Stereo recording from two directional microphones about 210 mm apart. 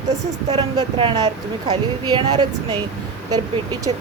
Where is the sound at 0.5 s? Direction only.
20° right (ahead or behind).